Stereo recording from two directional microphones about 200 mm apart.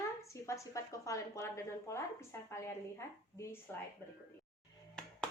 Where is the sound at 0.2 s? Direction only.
15° left (ahead or behind).